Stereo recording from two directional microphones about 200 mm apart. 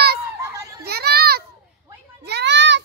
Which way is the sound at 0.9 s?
50° right (ahead or behind).